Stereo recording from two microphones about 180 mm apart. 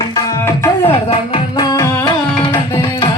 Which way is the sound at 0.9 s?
30° left (ahead or behind).